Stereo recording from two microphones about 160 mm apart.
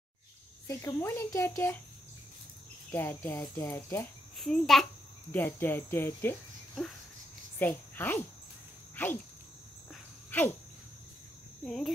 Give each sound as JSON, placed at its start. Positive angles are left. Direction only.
{"t": 0.7, "sound": "cricket", "side_deg": 15}
{"t": 2.9, "sound": "cricket", "side_deg": 15}
{"t": 4.4, "sound": "a child's voice", "side_deg": 0}
{"t": 5.3, "sound": "cricket", "side_deg": 15}
{"t": 7.5, "sound": "speech", "side_deg": 10}
{"t": 10.3, "sound": "cricket", "side_deg": 10}
{"t": 11.6, "sound": "speech", "side_deg": 0}